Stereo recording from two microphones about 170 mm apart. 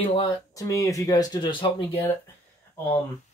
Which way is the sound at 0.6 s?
20° left (ahead or behind).